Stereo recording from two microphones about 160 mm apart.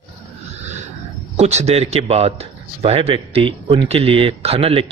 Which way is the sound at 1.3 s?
45° right (ahead or behind).